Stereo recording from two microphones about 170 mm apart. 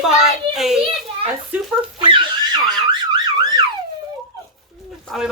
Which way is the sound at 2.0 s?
30° right (ahead or behind).